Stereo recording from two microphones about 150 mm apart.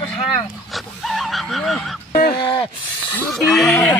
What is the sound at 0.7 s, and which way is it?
Pig, centre (ahead or behind).